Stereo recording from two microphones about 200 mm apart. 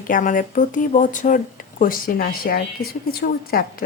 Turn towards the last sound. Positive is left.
turn(degrees=50)  # may be behind; listen again after turning